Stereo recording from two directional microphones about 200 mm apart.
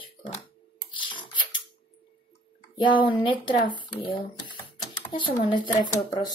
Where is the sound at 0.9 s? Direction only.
25° left (ahead or behind).